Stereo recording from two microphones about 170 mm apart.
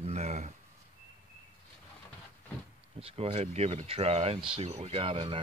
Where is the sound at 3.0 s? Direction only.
35° right (ahead or behind).